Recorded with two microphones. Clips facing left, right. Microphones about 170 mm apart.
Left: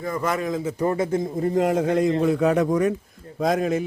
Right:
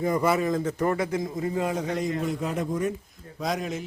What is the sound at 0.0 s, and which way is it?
Speech, 20° right (ahead or behind).